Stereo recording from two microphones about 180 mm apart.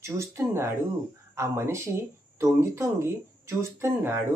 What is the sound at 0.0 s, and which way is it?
Speech, 15° right (ahead or behind).